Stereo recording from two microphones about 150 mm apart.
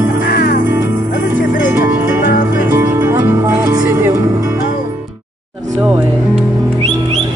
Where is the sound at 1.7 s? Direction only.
15° right (ahead or behind).